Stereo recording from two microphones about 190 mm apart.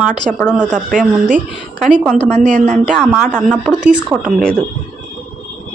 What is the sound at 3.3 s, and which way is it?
A woman's voice, 5° right (ahead or behind).